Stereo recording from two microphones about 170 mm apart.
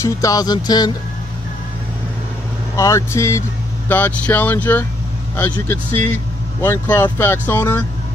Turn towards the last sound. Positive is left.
turn(degrees=10)  # may be behind; listen again after turning